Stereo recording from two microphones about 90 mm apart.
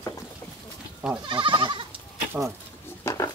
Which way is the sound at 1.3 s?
60° right (ahead or behind).